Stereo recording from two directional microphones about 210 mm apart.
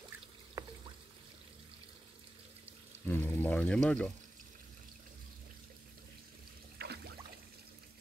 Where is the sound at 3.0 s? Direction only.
10° left (ahead or behind).